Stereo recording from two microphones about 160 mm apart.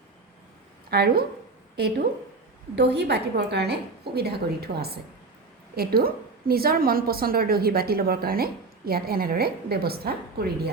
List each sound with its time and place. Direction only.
0.9 s a woman's voice: 75° right (ahead or behind)
2.7 s a woman's voice: 90° right